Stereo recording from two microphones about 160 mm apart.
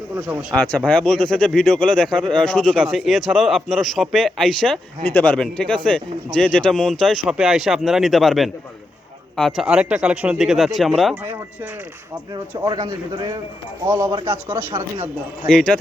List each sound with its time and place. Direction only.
0.5 s a man's voice: 10° left (ahead or behind)
11.1 s speech: 15° right (ahead or behind)
12.3 s a man's voice: 25° right (ahead or behind)
14.2 s speech: 30° right (ahead or behind)
15.4 s a man's voice: 5° left (ahead or behind)